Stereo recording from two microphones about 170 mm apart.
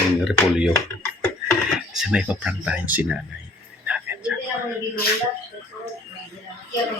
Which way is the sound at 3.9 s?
5° right (ahead or behind).